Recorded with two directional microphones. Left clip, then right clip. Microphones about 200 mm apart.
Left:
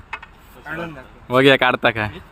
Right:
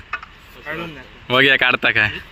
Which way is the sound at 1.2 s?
5° left (ahead or behind).